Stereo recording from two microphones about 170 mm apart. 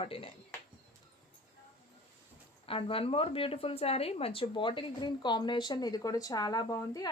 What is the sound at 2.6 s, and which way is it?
A woman's voice, 35° left (ahead or behind).